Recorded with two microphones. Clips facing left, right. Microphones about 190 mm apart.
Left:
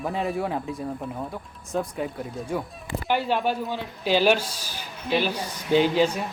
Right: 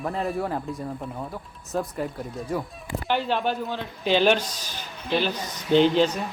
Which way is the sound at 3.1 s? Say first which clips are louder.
Left 1 dB; 10° left (ahead or behind).